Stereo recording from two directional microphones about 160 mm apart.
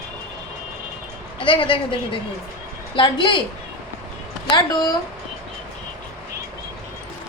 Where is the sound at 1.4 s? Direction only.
35° left (ahead or behind).